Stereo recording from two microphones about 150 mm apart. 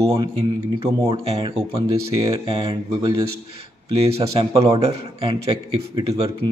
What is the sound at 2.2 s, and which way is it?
Speech, 25° right (ahead or behind).